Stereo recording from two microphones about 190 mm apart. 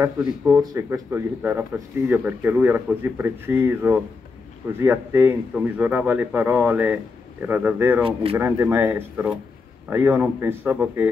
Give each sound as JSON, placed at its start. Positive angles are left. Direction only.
{"t": 0.2, "sound": "speech", "side_deg": -15}
{"t": 8.0, "sound": "speech", "side_deg": -30}
{"t": 8.4, "sound": "speech", "side_deg": -10}